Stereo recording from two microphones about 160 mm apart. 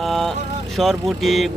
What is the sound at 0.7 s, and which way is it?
Speech, centre (ahead or behind).